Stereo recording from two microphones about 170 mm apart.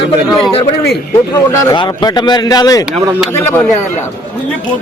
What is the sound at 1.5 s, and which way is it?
A man's voice, 25° left (ahead or behind).